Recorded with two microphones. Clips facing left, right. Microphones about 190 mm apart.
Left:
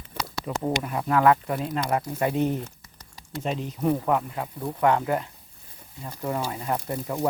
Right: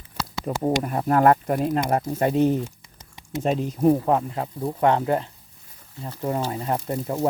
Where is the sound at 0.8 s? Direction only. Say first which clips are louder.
Right 2 dB; 40° right (ahead or behind).